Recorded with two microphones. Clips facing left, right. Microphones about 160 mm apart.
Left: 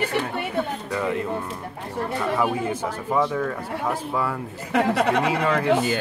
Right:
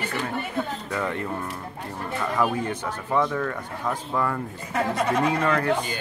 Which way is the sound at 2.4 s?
10° left (ahead or behind).